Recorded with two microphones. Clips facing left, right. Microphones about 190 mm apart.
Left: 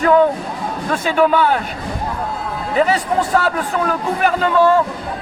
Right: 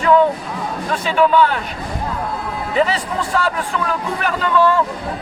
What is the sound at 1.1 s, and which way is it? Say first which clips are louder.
Speech: even; 45° left (ahead or behind).